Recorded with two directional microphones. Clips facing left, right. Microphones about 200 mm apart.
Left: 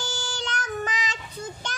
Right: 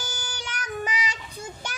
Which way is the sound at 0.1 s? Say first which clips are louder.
Left 5 dB; 10° right (ahead or behind).